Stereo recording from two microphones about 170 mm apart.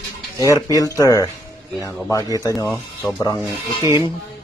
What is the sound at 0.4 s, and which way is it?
Speech, 20° left (ahead or behind).